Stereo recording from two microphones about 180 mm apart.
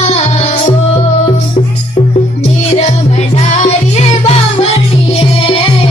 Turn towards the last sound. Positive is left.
turn(degrees=30)  # may be behind; listen again after turning